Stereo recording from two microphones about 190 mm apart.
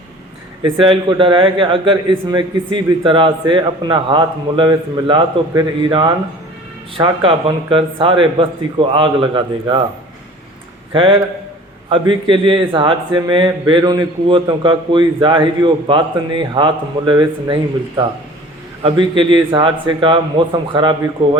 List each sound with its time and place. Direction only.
0.6 s a man's voice: 25° right (ahead or behind)
10.9 s a man's voice: 25° right (ahead or behind)
21.2 s a man's voice: 25° right (ahead or behind)